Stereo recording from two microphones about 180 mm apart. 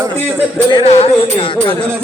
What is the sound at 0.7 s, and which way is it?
Music, 30° left (ahead or behind).